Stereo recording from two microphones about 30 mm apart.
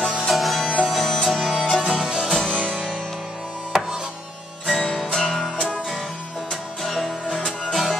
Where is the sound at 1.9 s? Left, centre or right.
Centre.